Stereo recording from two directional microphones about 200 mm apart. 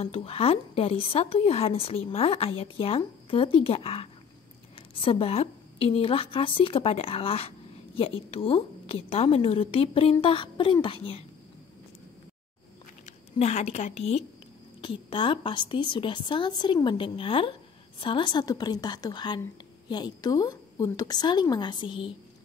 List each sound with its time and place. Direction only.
0.0 s a woman's voice: 30° left (ahead or behind)
13.0 s a woman's voice: 35° left (ahead or behind)